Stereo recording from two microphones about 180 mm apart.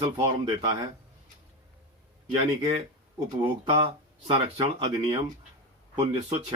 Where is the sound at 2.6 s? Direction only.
20° right (ahead or behind).